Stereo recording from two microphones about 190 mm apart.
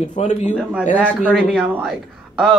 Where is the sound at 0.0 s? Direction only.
40° left (ahead or behind).